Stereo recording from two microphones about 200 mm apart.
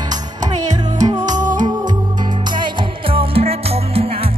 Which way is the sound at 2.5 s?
25° right (ahead or behind).